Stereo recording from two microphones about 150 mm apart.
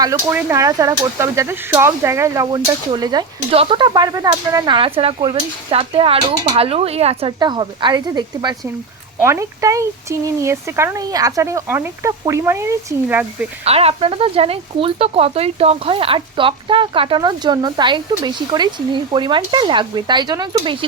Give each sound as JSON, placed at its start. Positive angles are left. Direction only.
{"t": 0.0, "sound": "speech", "side_deg": -20}
{"t": 13.7, "sound": "speech", "side_deg": -40}